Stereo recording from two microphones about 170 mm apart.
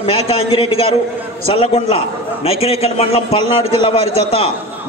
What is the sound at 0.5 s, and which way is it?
A man's voice, 35° left (ahead or behind).